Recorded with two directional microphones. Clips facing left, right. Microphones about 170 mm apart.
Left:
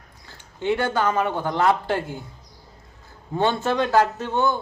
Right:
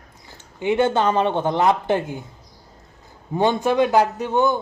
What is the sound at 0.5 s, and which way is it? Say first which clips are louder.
A woman's voice: right 4 dB; 20° right (ahead or behind).